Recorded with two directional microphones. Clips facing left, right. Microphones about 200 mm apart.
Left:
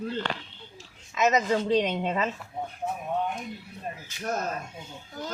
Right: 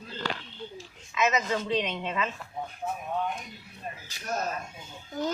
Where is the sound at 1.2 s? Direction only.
35° left (ahead or behind).